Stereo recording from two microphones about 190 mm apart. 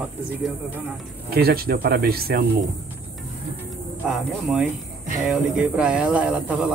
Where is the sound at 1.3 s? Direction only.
55° right (ahead or behind).